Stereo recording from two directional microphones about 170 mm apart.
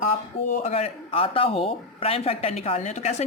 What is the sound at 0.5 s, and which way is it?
Speech, 35° left (ahead or behind).